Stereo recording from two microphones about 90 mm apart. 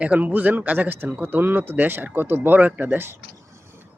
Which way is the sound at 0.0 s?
15° right (ahead or behind).